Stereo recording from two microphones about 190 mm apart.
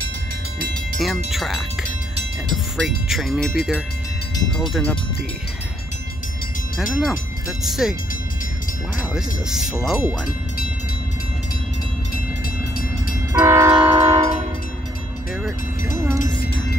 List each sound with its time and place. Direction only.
0.9 s speech: centre (ahead or behind)
6.8 s speech: centre (ahead or behind)
9.1 s speech: centre (ahead or behind)
13.3 s train: 15° right (ahead or behind)
13.9 s train: 30° right (ahead or behind)
16.0 s speech: 15° right (ahead or behind)